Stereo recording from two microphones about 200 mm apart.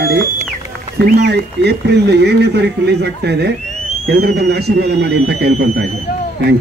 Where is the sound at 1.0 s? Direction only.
55° right (ahead or behind).